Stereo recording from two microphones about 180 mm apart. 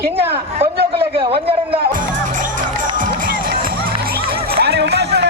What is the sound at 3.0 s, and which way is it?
Music, 50° right (ahead or behind).